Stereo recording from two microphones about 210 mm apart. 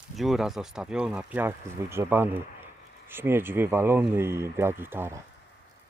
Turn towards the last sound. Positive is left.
turn(degrees=-10)  # may be behind; listen again after turning